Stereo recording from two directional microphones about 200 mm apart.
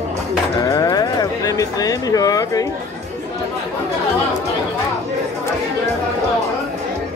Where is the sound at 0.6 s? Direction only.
20° left (ahead or behind).